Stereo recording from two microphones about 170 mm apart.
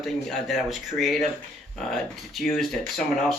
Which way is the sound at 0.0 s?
Centre (ahead or behind).